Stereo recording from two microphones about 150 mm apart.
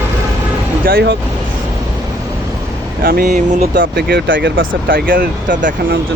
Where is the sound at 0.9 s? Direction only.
90° right.